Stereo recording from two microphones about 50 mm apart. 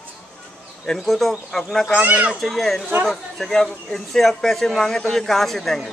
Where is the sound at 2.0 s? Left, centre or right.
Right.